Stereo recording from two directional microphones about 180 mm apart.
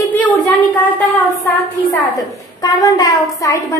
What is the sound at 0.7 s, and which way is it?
Speech, 10° left (ahead or behind).